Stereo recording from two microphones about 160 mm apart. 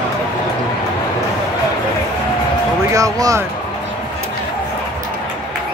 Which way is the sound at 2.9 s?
20° right (ahead or behind).